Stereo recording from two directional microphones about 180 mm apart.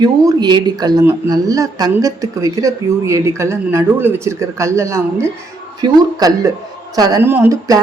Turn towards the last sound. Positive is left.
turn(degrees=-20)  # may be behind; listen again after turning